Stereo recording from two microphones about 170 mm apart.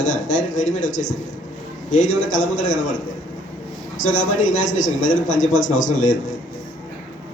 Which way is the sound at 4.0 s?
50° left (ahead or behind).